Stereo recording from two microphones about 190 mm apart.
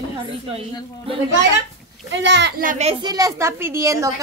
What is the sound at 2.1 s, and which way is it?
Speech, 65° right (ahead or behind).